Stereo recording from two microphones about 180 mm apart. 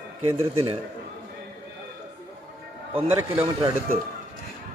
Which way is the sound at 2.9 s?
10° right (ahead or behind).